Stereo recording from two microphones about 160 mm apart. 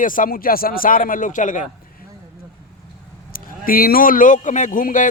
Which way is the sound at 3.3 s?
65° left (ahead or behind).